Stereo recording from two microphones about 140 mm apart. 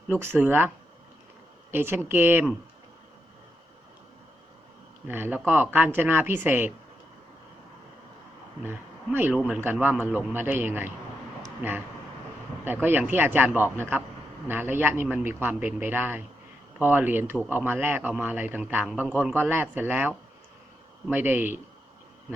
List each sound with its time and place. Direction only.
0.1 s speech: 15° right (ahead or behind)
1.7 s speech: 15° right (ahead or behind)
5.0 s speech: 15° right (ahead or behind)
9.8 s speech: 10° right (ahead or behind)